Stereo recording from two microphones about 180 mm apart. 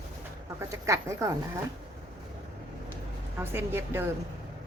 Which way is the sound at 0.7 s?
15° right (ahead or behind).